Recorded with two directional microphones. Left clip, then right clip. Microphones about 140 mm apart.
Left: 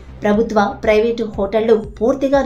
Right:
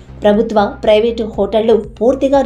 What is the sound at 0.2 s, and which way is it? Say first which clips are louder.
A woman's voice: right 4 dB; 15° right (ahead or behind).